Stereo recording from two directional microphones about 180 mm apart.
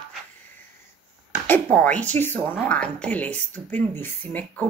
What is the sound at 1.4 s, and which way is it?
A woman's voice, 10° left (ahead or behind).